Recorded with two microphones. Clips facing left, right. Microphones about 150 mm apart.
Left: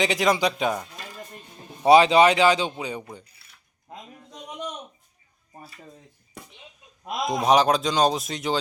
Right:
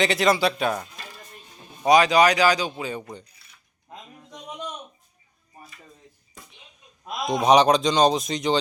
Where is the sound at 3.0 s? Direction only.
5° left (ahead or behind).